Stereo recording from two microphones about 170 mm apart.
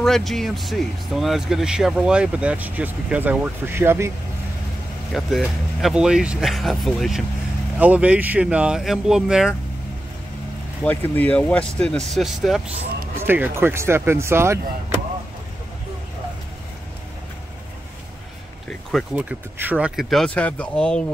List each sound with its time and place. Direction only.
0.0 s speech: centre (ahead or behind); by 4.1 s 15° right (ahead or behind)
5.1 s speech: centre (ahead or behind)
10.8 s speech: 10° left (ahead or behind)
13.2 s speech: 15° right (ahead or behind)
18.7 s a sound: 5° left (ahead or behind)
19.1 s speech: 10° right (ahead or behind)